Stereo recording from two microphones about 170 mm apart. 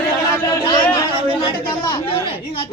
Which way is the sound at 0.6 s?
25° left (ahead or behind).